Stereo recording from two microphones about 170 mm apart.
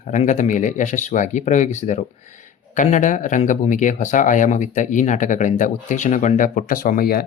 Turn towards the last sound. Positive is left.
turn(degrees=60)  # may be behind; listen again after turning